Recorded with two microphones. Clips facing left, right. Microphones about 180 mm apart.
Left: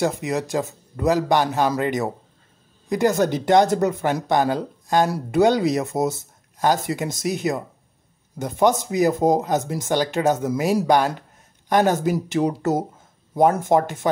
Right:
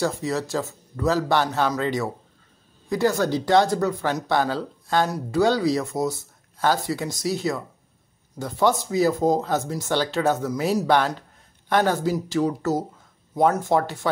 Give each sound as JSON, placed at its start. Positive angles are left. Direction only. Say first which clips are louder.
{"t": 0.0, "sound": "a man's voice", "louder": "left 2 dB", "side_deg": 20}